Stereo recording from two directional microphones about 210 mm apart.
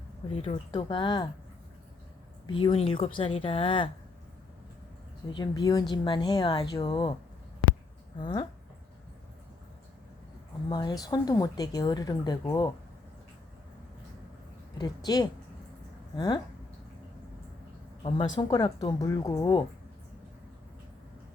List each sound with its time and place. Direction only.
0.4 s a woman's voice: 30° left (ahead or behind)
2.5 s a woman's voice: 25° left (ahead or behind)
5.3 s a woman's voice: 20° left (ahead or behind)
8.2 s a woman's voice: 20° left (ahead or behind)
10.7 s a woman's voice: 20° left (ahead or behind)
14.8 s a woman's voice: 20° left (ahead or behind)
18.3 s a woman's voice: 20° left (ahead or behind)